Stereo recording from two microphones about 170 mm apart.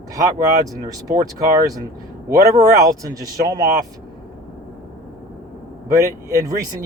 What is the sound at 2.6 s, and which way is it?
Speech, 20° right (ahead or behind).